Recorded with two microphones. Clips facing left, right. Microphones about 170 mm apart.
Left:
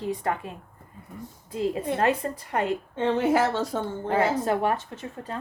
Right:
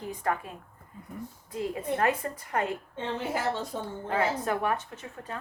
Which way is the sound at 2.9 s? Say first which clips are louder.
Left 12 dB; 90° left.